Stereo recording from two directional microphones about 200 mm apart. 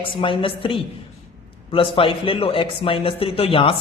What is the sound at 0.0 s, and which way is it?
Speech, 25° left (ahead or behind).